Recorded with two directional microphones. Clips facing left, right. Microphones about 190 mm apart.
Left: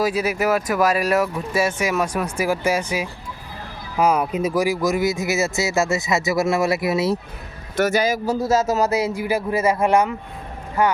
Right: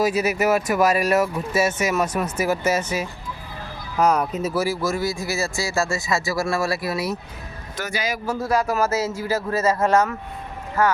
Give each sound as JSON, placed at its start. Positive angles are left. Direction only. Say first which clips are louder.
{"t": 0.2, "sound": "speech", "louder": "even", "side_deg": 0}
{"t": 2.4, "sound": "speech", "louder": "left 1 dB", "side_deg": 10}
{"t": 7.8, "sound": "speech", "louder": "left 8 dB", "side_deg": 45}
{"t": 8.4, "sound": "speech", "louder": "left 2 dB", "side_deg": 25}